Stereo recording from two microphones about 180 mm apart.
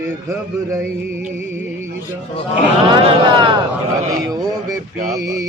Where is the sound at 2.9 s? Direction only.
25° right (ahead or behind).